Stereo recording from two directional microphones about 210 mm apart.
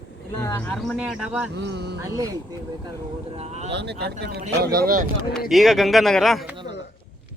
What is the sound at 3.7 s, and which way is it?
Speech, 50° right (ahead or behind).